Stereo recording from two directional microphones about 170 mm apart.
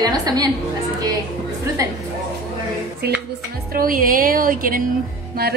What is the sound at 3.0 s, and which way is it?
Music, 70° right (ahead or behind).